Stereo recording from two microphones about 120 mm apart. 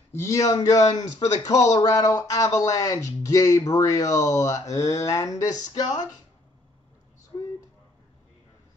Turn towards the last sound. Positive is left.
turn(degrees=25)  # may be behind; listen again after turning